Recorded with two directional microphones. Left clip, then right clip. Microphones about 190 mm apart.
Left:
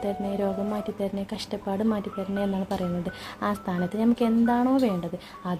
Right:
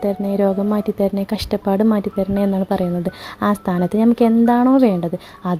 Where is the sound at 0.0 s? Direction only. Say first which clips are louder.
Right 10 dB; 35° right (ahead or behind).